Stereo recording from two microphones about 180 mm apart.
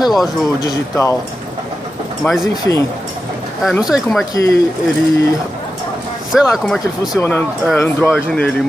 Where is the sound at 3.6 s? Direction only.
Centre (ahead or behind).